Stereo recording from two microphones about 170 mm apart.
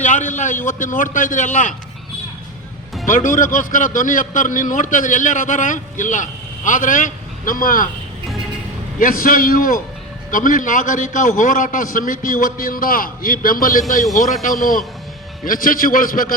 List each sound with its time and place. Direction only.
0.0 s a man's voice: 45° left (ahead or behind)
3.2 s a man's voice: 50° left (ahead or behind)
9.0 s a man's voice: 55° left (ahead or behind)